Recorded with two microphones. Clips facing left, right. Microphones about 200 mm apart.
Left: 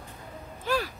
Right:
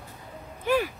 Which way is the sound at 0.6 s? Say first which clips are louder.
Right 4 dB; 20° right (ahead or behind).